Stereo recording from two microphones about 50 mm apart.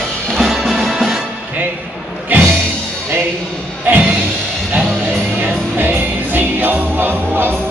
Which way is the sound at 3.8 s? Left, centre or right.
Right.